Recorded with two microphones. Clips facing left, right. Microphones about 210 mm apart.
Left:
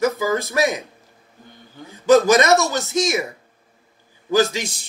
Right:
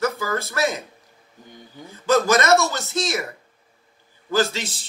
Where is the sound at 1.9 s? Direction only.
15° left (ahead or behind).